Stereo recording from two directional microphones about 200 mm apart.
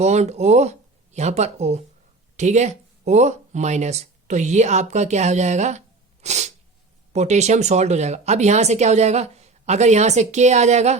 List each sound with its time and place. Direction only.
0.0 s speech: 35° right (ahead or behind)
6.2 s sneeze: 35° right (ahead or behind)
7.1 s speech: 35° right (ahead or behind)